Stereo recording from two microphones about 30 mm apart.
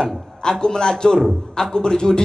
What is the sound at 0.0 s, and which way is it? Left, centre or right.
A man's voice, left.